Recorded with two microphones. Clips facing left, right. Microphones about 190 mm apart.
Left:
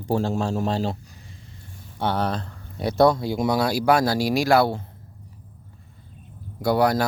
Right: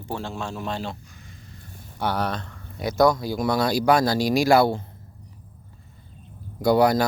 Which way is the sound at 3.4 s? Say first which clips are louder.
Even; 10° left (ahead or behind).